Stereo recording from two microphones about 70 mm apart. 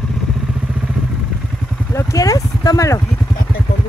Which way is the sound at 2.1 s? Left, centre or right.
Left.